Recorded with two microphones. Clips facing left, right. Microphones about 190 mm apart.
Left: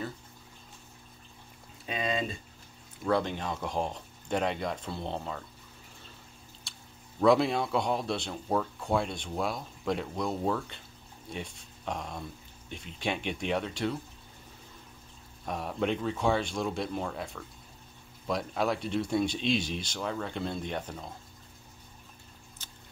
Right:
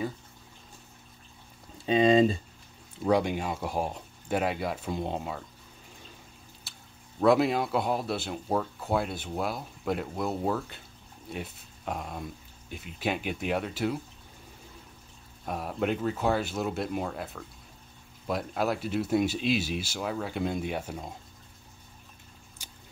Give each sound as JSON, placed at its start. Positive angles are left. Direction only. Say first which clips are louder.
{"t": 1.9, "sound": "speech", "louder": "right 11 dB", "side_deg": -30}
{"t": 3.1, "sound": "speech", "louder": "right 3 dB", "side_deg": -10}
{"t": 6.7, "sound": "drip", "louder": "even", "side_deg": -5}
{"t": 7.2, "sound": "speech", "louder": "right 1 dB", "side_deg": -5}
{"t": 15.4, "sound": "speech", "louder": "right 1 dB", "side_deg": -5}
{"t": 22.6, "sound": "scissors", "louder": "right 2 dB", "side_deg": -10}